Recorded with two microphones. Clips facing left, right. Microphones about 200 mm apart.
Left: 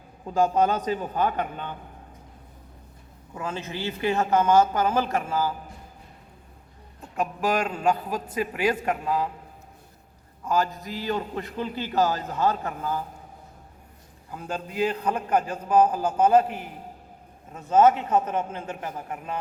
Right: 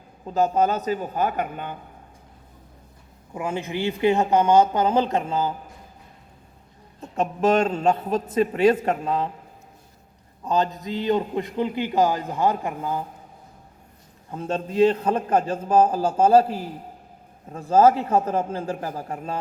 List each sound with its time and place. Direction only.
0.3 s a man's voice: 40° right (ahead or behind)
1.2 s a man's voice: 10° right (ahead or behind)
3.3 s a man's voice: 15° right (ahead or behind)
7.0 s a man's voice: 25° right (ahead or behind)
10.4 s a man's voice: 20° right (ahead or behind)
14.3 s a man's voice: 25° right (ahead or behind)